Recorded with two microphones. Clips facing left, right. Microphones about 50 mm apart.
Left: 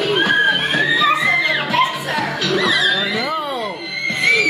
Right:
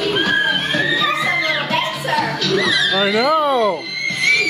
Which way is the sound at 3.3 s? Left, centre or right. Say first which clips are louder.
Right 7 dB; right.